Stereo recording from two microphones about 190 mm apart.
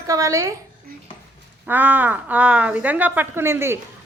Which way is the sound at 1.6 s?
10° right (ahead or behind).